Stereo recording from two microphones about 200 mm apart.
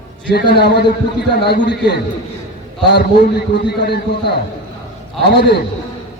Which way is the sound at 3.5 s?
55° left (ahead or behind).